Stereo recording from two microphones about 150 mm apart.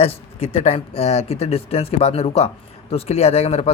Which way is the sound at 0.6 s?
40° left (ahead or behind).